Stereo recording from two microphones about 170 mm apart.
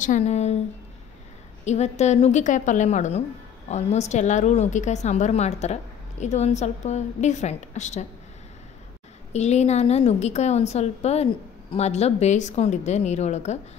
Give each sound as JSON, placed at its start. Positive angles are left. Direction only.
{"t": 0.0, "sound": "a woman's voice", "side_deg": 45}
{"t": 1.6, "sound": "a woman's voice", "side_deg": 40}
{"t": 9.3, "sound": "a woman's voice", "side_deg": 40}